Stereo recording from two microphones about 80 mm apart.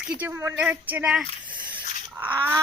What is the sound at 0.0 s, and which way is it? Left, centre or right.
Speech, right.